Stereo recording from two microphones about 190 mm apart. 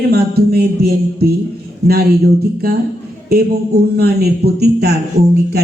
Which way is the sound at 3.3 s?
55° right (ahead or behind).